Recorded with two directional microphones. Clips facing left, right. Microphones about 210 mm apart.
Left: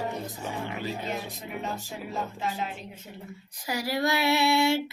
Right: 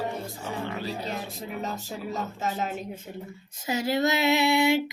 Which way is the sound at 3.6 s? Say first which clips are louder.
Right 3 dB; 20° right (ahead or behind).